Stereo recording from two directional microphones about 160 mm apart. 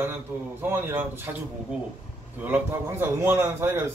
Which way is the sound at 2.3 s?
10° right (ahead or behind).